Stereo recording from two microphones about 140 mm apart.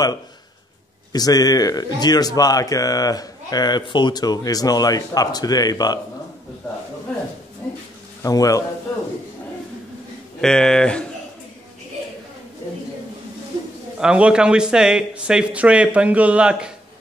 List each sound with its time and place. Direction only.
1.1 s speech: 25° left (ahead or behind)
7.6 s speech: 15° left (ahead or behind)
8.2 s speech: 25° left (ahead or behind)
10.4 s speech: 5° left (ahead or behind)
13.9 s a man's voice: 5° right (ahead or behind)